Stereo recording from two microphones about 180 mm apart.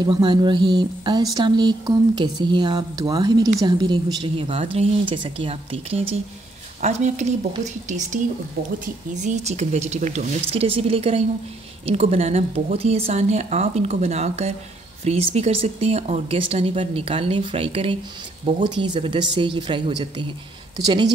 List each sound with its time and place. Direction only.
0.0 s speech: 25° right (ahead or behind)
8.7 s speech: 40° right (ahead or behind); by 21.1 s 25° right (ahead or behind)